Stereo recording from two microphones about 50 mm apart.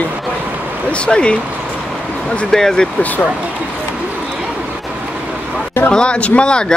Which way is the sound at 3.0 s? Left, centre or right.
Left.